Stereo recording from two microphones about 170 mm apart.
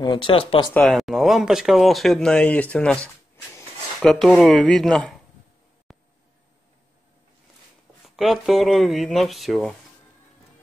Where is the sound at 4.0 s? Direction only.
5° left (ahead or behind).